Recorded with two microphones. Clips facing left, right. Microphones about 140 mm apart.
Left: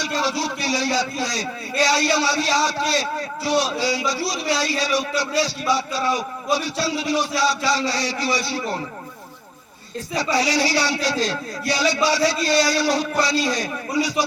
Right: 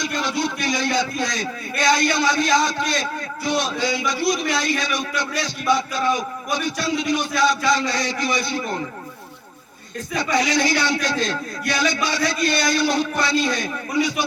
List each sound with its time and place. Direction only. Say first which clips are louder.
0.0 s a man's voice: even; 35° left (ahead or behind)
10.2 s a man's voice: even; 35° left (ahead or behind)